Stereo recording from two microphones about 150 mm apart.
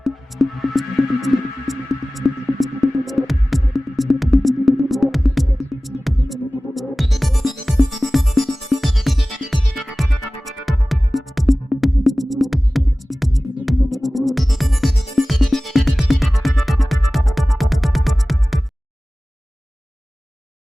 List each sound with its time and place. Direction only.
0.0 s music: centre (ahead or behind)